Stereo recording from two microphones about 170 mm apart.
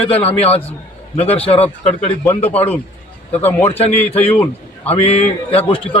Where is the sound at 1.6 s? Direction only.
35° left (ahead or behind).